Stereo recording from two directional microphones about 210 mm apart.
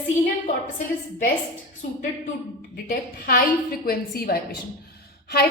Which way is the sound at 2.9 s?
45° left (ahead or behind).